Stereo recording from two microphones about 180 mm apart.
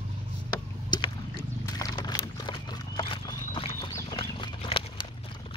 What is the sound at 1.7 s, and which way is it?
Horse, 20° left (ahead or behind).